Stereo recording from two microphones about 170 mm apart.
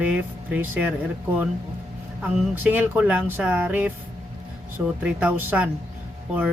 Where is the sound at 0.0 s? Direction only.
10° right (ahead or behind).